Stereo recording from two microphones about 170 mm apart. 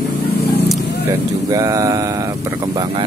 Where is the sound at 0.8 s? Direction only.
70° left (ahead or behind).